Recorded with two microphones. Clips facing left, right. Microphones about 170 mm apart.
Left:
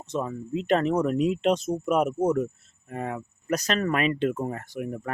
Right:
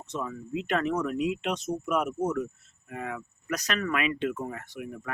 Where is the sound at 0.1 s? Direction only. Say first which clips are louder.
Left 4 dB; 30° left (ahead or behind).